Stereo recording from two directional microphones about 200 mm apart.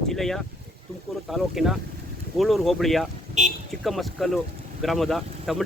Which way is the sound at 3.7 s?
Centre (ahead or behind).